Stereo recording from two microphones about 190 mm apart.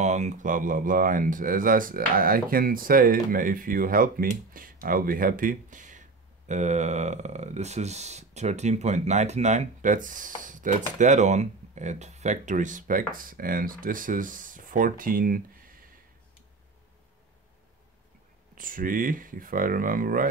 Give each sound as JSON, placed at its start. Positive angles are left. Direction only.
{"t": 0.0, "sound": "speech", "side_deg": -40}
{"t": 18.5, "sound": "speech", "side_deg": -45}